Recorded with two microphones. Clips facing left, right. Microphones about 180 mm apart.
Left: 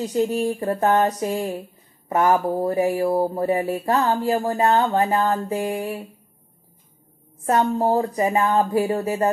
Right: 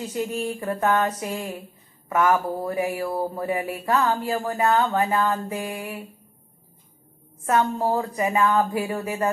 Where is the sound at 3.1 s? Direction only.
20° left (ahead or behind).